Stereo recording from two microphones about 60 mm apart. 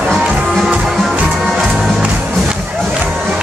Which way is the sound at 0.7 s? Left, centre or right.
Centre.